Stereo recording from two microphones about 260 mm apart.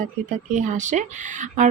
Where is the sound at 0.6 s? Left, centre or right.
Right.